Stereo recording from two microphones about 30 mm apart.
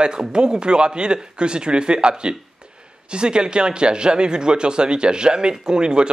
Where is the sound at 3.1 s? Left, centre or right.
Right.